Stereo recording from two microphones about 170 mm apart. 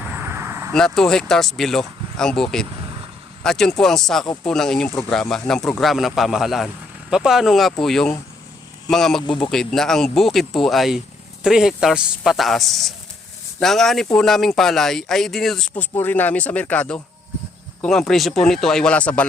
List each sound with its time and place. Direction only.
0.0 s a sound: 15° right (ahead or behind)
0.7 s speech: 5° left (ahead or behind)
9.2 s speech: 30° left (ahead or behind)
9.5 s speech: centre (ahead or behind)